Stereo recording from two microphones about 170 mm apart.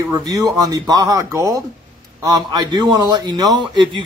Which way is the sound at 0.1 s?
20° right (ahead or behind).